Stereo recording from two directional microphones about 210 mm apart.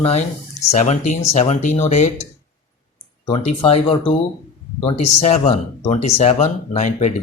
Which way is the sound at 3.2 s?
25° left (ahead or behind).